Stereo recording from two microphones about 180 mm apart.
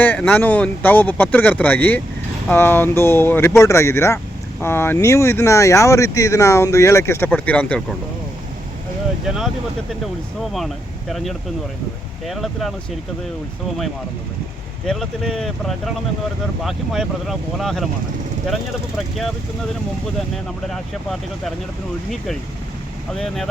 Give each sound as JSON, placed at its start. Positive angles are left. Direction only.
{"t": 0.0, "sound": "speech", "side_deg": 10}
{"t": 9.2, "sound": "speech", "side_deg": -5}
{"t": 11.1, "sound": "speech", "side_deg": 0}
{"t": 14.8, "sound": "speech", "side_deg": 0}
{"t": 20.3, "sound": "speech", "side_deg": 0}
{"t": 23.1, "sound": "speech", "side_deg": 5}